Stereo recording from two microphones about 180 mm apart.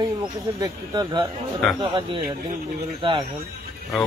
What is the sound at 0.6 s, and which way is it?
Speech, 20° right (ahead or behind).